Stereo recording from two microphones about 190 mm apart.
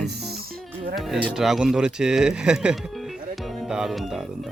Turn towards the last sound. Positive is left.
turn(degrees=0)  # may be behind; listen again after turning